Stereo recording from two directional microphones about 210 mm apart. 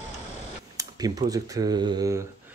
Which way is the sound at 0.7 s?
20° right (ahead or behind).